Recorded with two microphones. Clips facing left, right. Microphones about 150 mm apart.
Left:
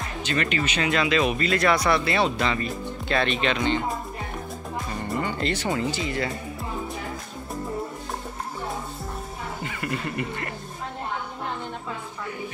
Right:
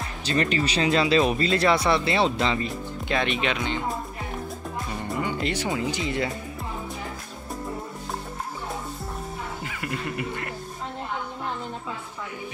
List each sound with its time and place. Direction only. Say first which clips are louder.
0.2 s speech: right 2 dB; 35° right (ahead or behind); by 3.8 s 5° right (ahead or behind)
5.2 s speech: right 1 dB; 10° right (ahead or behind)
9.6 s speech: left 5 dB; centre (ahead or behind)